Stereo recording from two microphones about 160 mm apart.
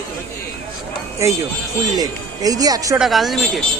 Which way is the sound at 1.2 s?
20° right (ahead or behind).